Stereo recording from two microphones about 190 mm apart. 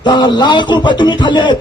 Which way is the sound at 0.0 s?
25° left (ahead or behind).